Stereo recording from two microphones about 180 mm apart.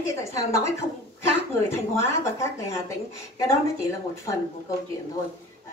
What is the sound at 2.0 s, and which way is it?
Speech, 15° left (ahead or behind).